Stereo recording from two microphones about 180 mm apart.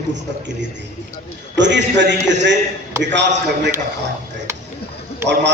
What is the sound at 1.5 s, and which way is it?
A man's voice, 80° right.